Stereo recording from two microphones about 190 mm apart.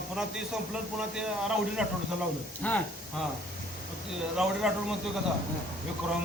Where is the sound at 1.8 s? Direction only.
5° right (ahead or behind).